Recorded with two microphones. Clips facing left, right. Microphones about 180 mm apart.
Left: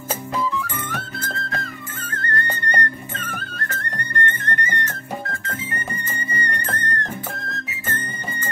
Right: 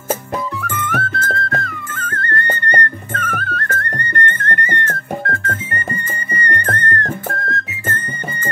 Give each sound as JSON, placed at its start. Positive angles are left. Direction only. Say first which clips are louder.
{"t": 0.5, "sound": "music", "louder": "right 4 dB", "side_deg": -60}
{"t": 6.4, "sound": "music", "louder": "right 9 dB", "side_deg": -60}